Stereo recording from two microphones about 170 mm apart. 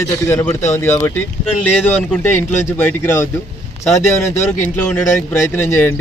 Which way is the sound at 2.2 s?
10° left (ahead or behind).